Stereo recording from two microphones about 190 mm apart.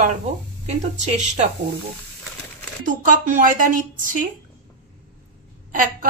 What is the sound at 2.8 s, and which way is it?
A woman's voice, 45° right (ahead or behind).